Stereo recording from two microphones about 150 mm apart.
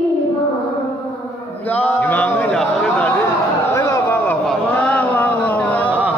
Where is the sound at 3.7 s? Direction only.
20° left (ahead or behind).